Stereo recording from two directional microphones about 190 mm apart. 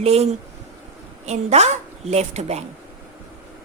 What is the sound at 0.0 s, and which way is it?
A woman's voice, 35° right (ahead or behind).